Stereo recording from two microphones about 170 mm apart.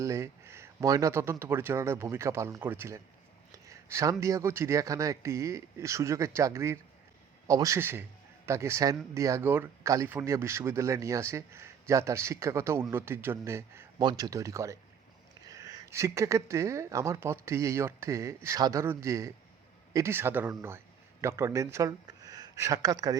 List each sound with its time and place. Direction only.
0.0 s a man's voice: 15° right (ahead or behind)